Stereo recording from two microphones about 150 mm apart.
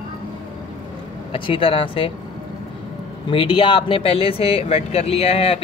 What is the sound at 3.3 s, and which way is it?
Speech, 35° left (ahead or behind).